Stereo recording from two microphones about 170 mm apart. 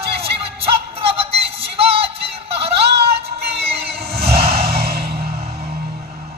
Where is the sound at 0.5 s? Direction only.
35° right (ahead or behind).